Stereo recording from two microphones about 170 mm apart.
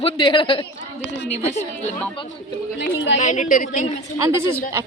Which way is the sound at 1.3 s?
40° left (ahead or behind).